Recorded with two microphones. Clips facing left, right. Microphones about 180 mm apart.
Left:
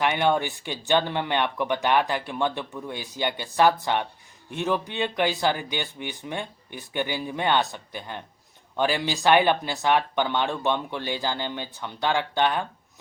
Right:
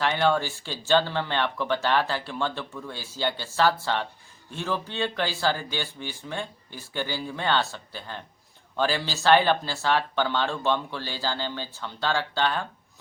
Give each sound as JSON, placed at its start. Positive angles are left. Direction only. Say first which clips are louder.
{"t": 0.0, "sound": "speech", "louder": "left 1 dB", "side_deg": 15}